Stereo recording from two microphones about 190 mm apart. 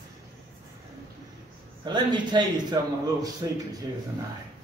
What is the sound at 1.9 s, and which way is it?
A man's voice, 25° right (ahead or behind).